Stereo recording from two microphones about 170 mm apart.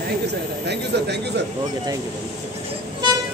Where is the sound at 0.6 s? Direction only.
80° right.